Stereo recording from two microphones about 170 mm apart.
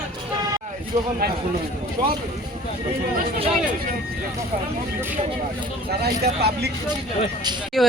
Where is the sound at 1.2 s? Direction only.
70° right (ahead or behind).